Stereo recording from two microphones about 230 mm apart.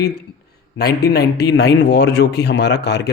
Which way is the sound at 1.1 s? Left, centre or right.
Left.